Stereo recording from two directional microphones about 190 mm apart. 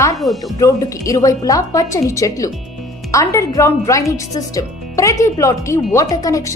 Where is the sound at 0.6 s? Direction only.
15° left (ahead or behind).